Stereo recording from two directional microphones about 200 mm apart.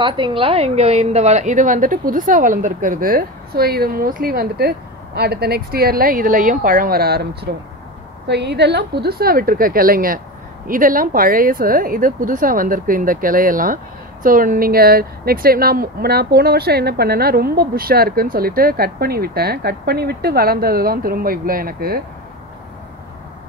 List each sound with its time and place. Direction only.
0.0 s speech: 25° right (ahead or behind); by 22.0 s 50° right (ahead or behind)